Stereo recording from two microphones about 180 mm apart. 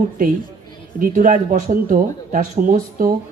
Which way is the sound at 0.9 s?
50° right (ahead or behind).